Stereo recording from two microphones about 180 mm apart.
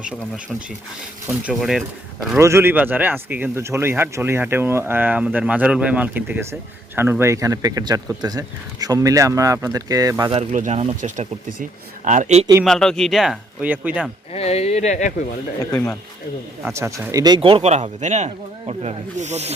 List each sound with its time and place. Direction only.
1.5 s speech: centre (ahead or behind)
2.4 s speech: 15° right (ahead or behind)
10.3 s speech: 40° right (ahead or behind)
12.6 s speech: 5° left (ahead or behind)
14.3 s speech: 35° left (ahead or behind)
15.7 s speech: 10° left (ahead or behind)
16.6 s speech: 15° right (ahead or behind); by 19.5 s 40° right (ahead or behind)